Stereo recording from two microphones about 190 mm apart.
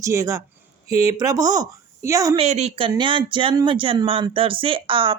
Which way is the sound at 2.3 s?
35° right (ahead or behind).